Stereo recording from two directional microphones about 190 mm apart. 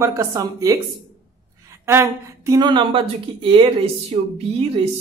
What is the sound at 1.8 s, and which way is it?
Speech, 15° right (ahead or behind).